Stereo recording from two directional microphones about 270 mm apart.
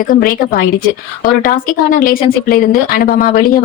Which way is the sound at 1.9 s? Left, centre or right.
Left.